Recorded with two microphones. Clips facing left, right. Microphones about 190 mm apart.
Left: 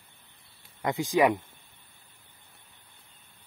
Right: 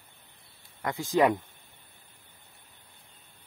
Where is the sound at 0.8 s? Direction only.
20° left (ahead or behind).